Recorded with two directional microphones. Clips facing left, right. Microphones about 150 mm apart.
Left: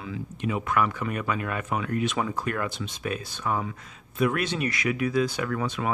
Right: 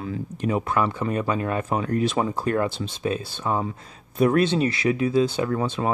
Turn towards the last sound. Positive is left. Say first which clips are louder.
# right 4 dB
turn(degrees=-30)  # may be behind; listen again after turning